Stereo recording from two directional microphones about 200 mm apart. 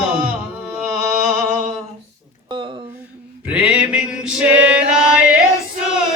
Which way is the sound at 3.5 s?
5° right (ahead or behind).